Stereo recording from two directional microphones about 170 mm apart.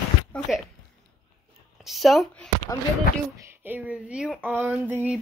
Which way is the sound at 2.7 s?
20° left (ahead or behind).